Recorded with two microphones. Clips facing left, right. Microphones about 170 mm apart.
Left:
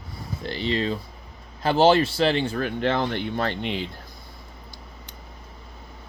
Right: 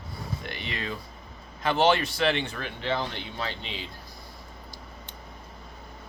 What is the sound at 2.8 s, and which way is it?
Speech, 55° left (ahead or behind).